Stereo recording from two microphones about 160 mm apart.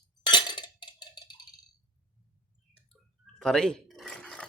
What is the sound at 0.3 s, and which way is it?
Music, 30° left (ahead or behind).